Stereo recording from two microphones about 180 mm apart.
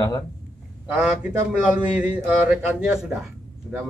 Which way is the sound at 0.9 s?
5° right (ahead or behind).